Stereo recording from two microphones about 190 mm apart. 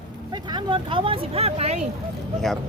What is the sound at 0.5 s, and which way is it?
Speech, 25° right (ahead or behind).